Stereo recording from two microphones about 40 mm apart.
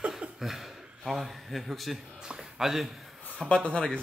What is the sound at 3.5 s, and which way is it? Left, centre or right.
Speech, left.